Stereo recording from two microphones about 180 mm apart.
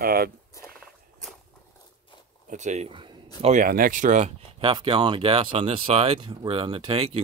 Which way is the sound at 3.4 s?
50° right (ahead or behind).